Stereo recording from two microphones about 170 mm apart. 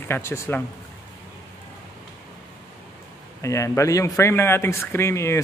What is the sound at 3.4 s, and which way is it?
A man's voice, 15° left (ahead or behind).